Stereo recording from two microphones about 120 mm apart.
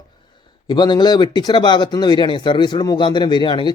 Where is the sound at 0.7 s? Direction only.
35° left (ahead or behind).